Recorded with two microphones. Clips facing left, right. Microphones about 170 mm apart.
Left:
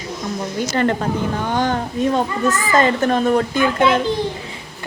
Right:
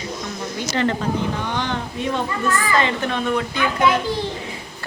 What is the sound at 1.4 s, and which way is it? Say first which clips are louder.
Speech: left 5 dB; 45° left (ahead or behind).